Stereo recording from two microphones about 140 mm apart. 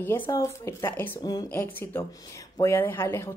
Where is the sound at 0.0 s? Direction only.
15° left (ahead or behind).